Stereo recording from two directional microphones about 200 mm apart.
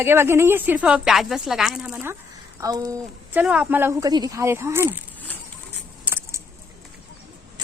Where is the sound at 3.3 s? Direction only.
5° right (ahead or behind).